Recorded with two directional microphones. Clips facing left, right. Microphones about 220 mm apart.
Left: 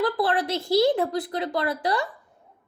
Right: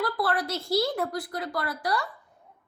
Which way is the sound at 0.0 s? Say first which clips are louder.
Left 4 dB; 20° left (ahead or behind).